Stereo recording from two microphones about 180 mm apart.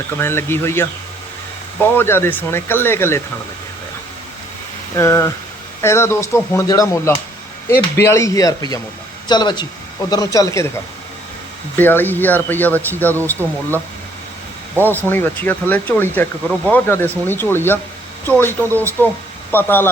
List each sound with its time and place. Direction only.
0.2 s speech: 15° left (ahead or behind)
4.9 s speech: 15° left (ahead or behind)
11.8 s speech: 10° left (ahead or behind)
14.8 s speech: 10° left (ahead or behind)